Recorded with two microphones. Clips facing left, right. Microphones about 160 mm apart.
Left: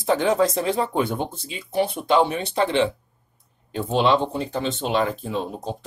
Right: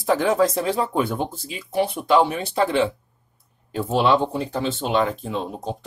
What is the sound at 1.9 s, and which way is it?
Speech, 25° left (ahead or behind).